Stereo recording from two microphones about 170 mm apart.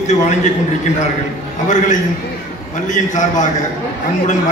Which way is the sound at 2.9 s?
50° left (ahead or behind).